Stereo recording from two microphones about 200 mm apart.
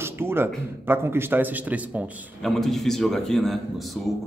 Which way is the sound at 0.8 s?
10° right (ahead or behind).